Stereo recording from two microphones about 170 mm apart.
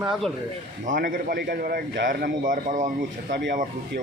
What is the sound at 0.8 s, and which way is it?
A man's voice, 50° right (ahead or behind).